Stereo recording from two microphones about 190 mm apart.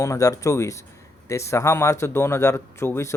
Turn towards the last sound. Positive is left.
turn(degrees=15)  # may be behind; listen again after turning